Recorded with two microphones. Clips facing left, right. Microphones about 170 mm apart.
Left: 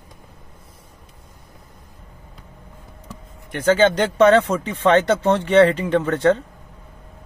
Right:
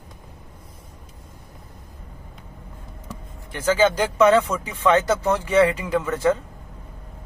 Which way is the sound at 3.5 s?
65° left (ahead or behind).